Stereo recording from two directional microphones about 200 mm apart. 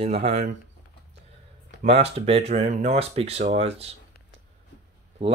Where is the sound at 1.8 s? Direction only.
30° right (ahead or behind).